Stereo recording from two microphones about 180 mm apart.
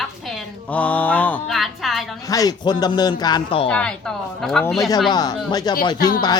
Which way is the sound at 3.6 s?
5° left (ahead or behind).